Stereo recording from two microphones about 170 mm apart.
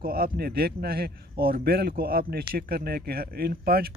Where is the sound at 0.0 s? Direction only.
60° right (ahead or behind).